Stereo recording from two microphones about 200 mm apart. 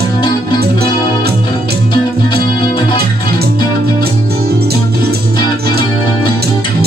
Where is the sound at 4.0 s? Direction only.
50° right (ahead or behind).